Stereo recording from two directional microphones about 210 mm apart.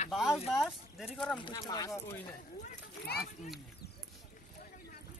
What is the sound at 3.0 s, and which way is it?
Speech, 50° left (ahead or behind).